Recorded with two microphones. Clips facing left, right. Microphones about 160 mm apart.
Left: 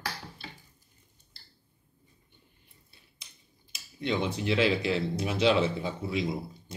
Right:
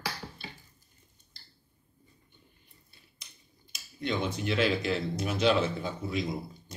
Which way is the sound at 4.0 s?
30° left (ahead or behind).